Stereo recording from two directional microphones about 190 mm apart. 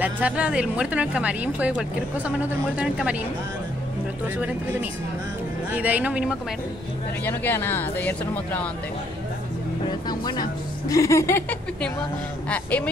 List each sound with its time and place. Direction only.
0.0 s speech: 5° right (ahead or behind)
5.7 s speech: 10° right (ahead or behind)
7.2 s speech: 10° left (ahead or behind)
9.8 s speech: 20° left (ahead or behind)